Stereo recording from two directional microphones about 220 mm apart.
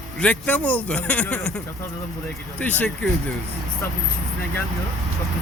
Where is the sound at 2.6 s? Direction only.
5° left (ahead or behind).